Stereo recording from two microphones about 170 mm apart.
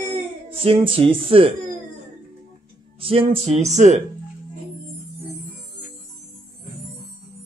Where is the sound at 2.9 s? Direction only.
35° right (ahead or behind).